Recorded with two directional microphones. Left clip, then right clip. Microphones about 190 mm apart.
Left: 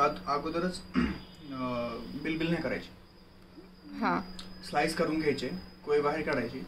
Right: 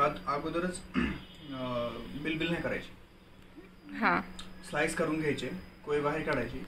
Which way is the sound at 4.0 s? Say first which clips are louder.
Right 2 dB; 10° left (ahead or behind).